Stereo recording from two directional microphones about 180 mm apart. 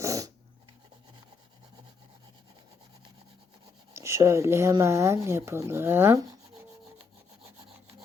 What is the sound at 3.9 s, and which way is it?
Speech, 15° right (ahead or behind).